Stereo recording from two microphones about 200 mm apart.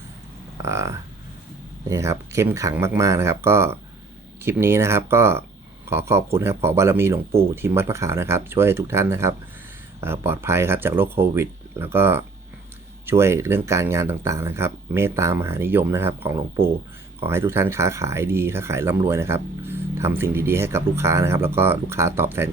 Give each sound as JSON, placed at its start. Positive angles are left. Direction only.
{"t": 0.6, "sound": "speech", "side_deg": -15}